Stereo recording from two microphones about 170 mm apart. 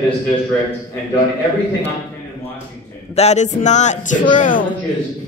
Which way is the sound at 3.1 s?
40° left (ahead or behind).